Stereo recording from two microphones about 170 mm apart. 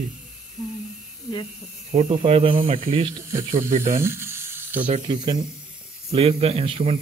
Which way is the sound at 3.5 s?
50° right (ahead or behind).